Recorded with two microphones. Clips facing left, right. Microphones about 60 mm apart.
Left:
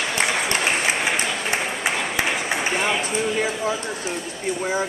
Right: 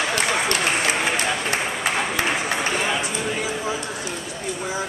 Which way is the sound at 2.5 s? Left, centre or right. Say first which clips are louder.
Even; centre.